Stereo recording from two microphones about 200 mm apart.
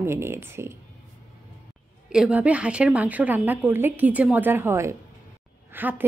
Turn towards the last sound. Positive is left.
turn(degrees=-10)  # may be behind; listen again after turning